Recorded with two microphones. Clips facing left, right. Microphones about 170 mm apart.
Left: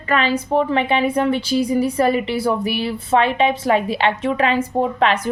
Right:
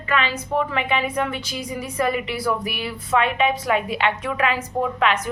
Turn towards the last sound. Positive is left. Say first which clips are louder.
# left 3 dB
turn(degrees=30)  # may be behind; listen again after turning